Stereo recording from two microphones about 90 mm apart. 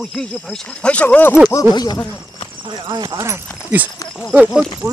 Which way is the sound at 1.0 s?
25° left (ahead or behind).